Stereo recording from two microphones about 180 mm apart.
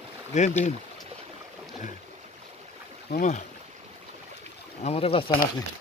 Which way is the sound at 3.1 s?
70° left (ahead or behind).